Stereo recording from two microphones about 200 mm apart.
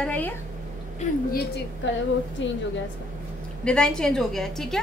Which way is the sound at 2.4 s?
65° left (ahead or behind).